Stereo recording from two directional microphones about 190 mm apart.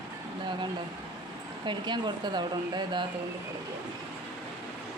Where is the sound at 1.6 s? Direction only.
25° right (ahead or behind).